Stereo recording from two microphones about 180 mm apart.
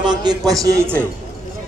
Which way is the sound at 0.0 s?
25° right (ahead or behind).